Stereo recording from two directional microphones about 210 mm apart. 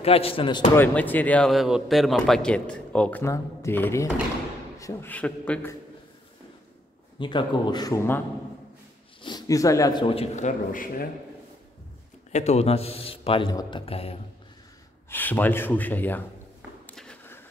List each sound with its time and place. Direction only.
0.0 s a man's voice: 25° left (ahead or behind)
0.7 s a man's voice: 10° left (ahead or behind)
7.2 s a man's voice: 20° left (ahead or behind)
9.2 s a man's voice: 20° left (ahead or behind); by 11.1 s 40° left (ahead or behind)
12.3 s a man's voice: 30° left (ahead or behind)
15.0 s speech: 10° left (ahead or behind)
16.8 s a sound: 5° left (ahead or behind)